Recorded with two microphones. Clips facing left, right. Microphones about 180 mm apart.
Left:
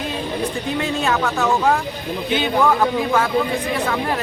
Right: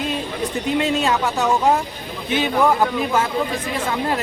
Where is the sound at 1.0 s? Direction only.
20° right (ahead or behind).